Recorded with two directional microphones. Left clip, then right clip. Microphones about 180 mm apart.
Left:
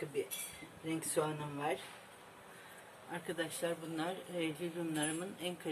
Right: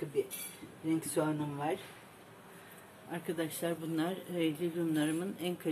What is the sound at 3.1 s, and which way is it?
Speech, 20° right (ahead or behind).